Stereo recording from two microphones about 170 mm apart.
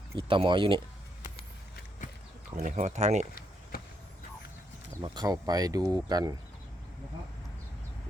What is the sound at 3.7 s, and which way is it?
Vehicle, 65° left (ahead or behind).